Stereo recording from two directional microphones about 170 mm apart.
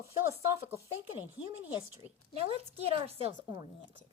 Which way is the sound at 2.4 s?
35° right (ahead or behind).